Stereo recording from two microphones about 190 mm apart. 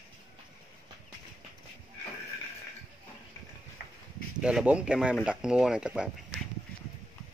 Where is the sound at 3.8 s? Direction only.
55° left (ahead or behind).